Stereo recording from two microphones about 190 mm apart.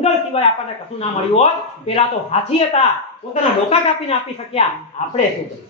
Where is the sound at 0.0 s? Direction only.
35° left (ahead or behind).